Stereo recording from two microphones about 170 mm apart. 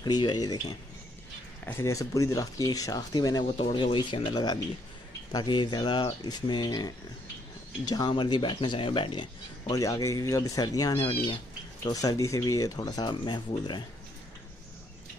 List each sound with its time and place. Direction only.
0.0 s speech: 25° left (ahead or behind)
3.5 s speech: 35° left (ahead or behind)